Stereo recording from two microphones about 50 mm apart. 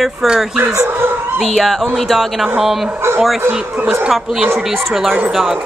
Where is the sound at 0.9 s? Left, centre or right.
Right.